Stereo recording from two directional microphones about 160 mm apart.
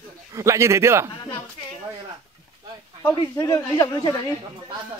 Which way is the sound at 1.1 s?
25° left (ahead or behind).